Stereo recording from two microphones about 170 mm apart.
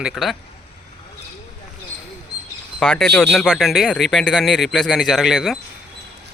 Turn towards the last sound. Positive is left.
turn(degrees=0)  # may be behind; listen again after turning